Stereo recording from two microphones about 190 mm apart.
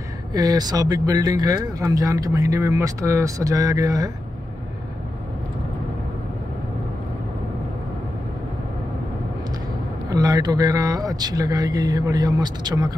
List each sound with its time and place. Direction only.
0.3 s speech: 20° right (ahead or behind)
10.0 s speech: 20° right (ahead or behind)